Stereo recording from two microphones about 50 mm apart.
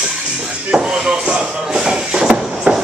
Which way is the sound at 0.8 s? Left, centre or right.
Centre.